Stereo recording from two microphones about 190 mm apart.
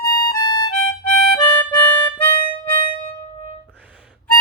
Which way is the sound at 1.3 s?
10° left (ahead or behind).